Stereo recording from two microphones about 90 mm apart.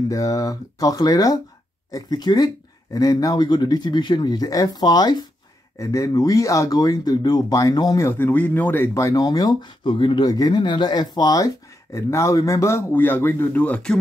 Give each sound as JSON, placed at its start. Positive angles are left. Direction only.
{"t": 0.1, "sound": "speech", "side_deg": 40}
{"t": 5.8, "sound": "speech", "side_deg": 40}
{"t": 8.1, "sound": "speech", "side_deg": 25}
{"t": 10.3, "sound": "speech", "side_deg": 50}